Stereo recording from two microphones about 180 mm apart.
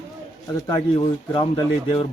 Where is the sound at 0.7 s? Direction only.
25° left (ahead or behind).